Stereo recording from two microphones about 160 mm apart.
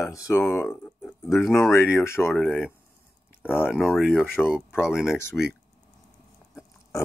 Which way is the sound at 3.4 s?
15° left (ahead or behind).